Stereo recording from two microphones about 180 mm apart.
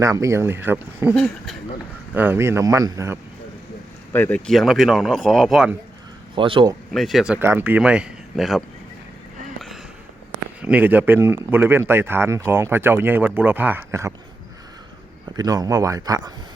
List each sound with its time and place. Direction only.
0.0 s speech: 15° right (ahead or behind)
1.1 s speech: 5° left (ahead or behind)
2.1 s speech: 10° right (ahead or behind)
4.1 s speech: 10° left (ahead or behind)
6.3 s speech: 30° right (ahead or behind)
6.9 s speech: centre (ahead or behind)
10.6 s speech: 10° right (ahead or behind)
15.4 s speech: 20° right (ahead or behind)